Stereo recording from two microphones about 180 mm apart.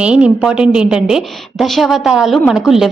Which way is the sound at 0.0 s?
5° right (ahead or behind).